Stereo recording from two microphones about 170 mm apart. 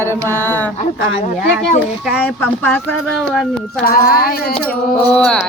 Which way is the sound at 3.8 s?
65° left (ahead or behind).